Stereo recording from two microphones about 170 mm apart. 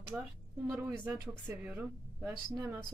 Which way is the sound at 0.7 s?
15° right (ahead or behind).